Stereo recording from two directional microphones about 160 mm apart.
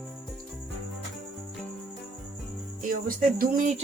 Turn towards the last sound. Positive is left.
turn(degrees=-60)  # may be behind; listen again after turning